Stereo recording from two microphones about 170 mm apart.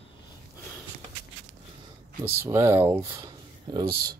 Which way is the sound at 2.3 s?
15° right (ahead or behind).